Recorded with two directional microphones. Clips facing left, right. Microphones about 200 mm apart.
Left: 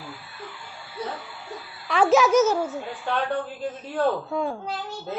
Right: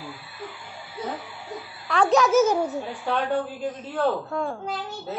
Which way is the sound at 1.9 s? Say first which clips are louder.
Left 1 dB; centre (ahead or behind).